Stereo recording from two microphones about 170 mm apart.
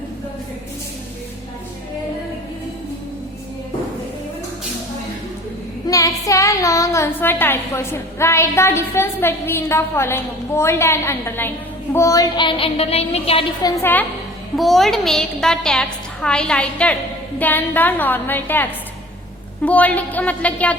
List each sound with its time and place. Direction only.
5.9 s a woman's voice: 20° left (ahead or behind); by 13.4 s 35° left (ahead or behind)
13.6 s a woman's voice: 20° left (ahead or behind)
14.5 s a woman's voice: centre (ahead or behind)